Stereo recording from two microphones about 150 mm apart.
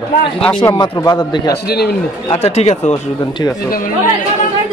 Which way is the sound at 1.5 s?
90° left.